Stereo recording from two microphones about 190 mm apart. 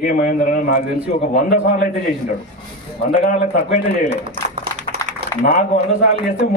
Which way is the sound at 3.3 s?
40° left (ahead or behind).